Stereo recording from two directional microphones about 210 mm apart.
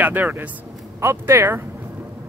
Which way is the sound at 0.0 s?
10° right (ahead or behind).